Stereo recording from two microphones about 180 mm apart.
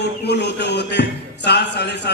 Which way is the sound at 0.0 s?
70° left (ahead or behind).